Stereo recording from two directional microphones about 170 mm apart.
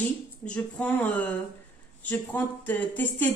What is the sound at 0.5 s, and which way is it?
Speech, 10° left (ahead or behind).